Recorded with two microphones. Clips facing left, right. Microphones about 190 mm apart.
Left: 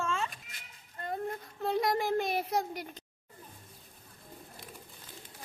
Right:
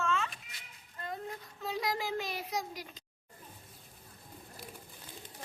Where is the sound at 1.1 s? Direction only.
55° left (ahead or behind).